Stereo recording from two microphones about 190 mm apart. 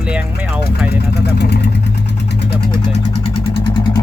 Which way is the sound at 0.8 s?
60° left (ahead or behind).